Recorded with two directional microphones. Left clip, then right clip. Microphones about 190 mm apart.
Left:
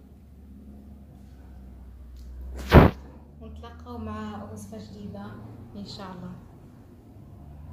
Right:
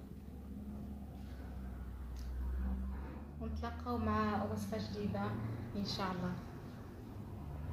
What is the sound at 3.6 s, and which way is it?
Speech, 25° right (ahead or behind).